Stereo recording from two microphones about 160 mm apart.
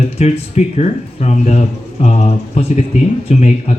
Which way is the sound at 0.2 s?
40° left (ahead or behind).